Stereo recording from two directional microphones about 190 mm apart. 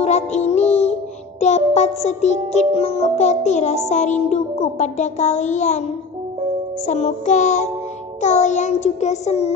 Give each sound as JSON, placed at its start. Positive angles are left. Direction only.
{"t": 0.0, "sound": "music", "side_deg": 35}
{"t": 6.9, "sound": "music", "side_deg": 35}